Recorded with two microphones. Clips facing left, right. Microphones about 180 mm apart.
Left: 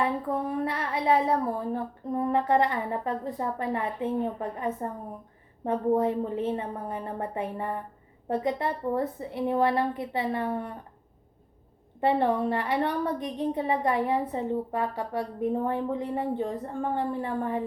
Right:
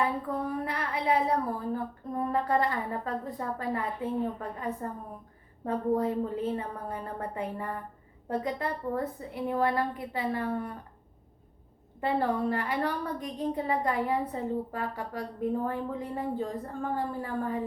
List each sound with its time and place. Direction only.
0.0 s speech: 25° left (ahead or behind)
11.9 s speech: 25° left (ahead or behind)